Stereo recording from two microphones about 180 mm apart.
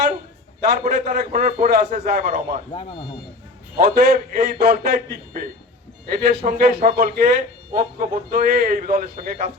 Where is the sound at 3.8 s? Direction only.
50° right (ahead or behind).